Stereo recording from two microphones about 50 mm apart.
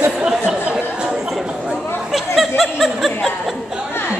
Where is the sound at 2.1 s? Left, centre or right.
Centre.